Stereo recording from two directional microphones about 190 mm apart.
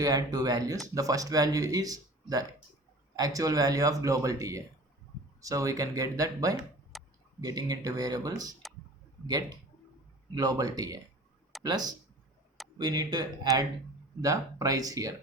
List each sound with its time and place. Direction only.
0.0 s speech: 20° right (ahead or behind)
6.9 s a sound: centre (ahead or behind)
7.4 s speech: 20° right (ahead or behind)